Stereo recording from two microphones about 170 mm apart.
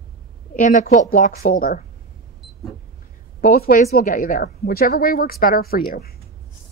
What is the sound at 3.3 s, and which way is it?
A woman's voice, 60° left (ahead or behind).